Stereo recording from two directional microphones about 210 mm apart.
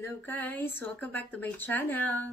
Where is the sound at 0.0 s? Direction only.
10° left (ahead or behind).